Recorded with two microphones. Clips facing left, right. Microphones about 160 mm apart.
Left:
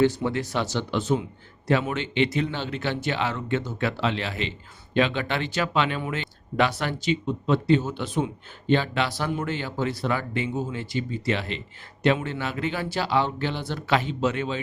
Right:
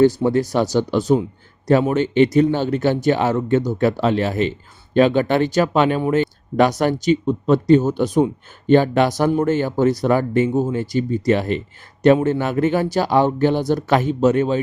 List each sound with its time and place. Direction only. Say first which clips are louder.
0.0 s speech: right 8 dB; 40° right (ahead or behind)